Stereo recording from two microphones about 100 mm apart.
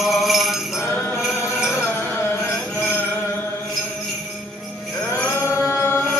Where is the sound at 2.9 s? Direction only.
20° left (ahead or behind).